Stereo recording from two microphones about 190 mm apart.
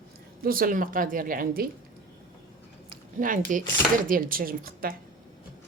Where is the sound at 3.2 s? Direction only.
45° right (ahead or behind).